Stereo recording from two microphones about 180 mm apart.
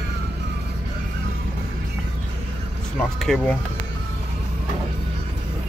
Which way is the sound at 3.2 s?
5° left (ahead or behind).